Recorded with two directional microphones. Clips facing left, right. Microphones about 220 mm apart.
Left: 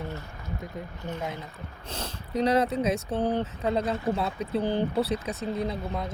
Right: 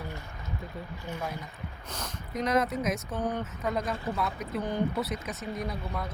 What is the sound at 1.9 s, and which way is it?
Speech, 30° left (ahead or behind).